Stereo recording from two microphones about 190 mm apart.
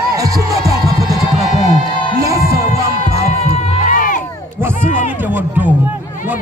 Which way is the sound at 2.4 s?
15° right (ahead or behind).